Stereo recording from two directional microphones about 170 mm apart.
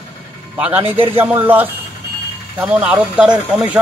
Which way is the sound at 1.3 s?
10° right (ahead or behind).